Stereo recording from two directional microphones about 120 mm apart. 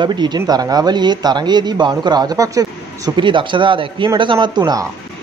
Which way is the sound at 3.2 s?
40° right (ahead or behind).